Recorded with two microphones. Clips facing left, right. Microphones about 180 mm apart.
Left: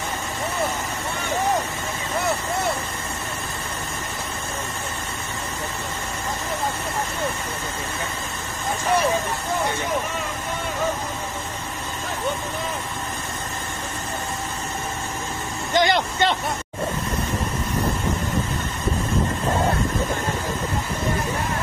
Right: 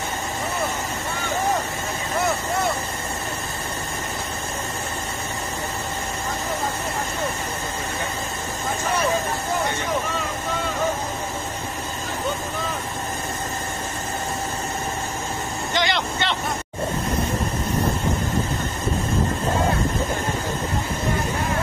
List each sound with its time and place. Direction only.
15.7 s speech: 45° left (ahead or behind)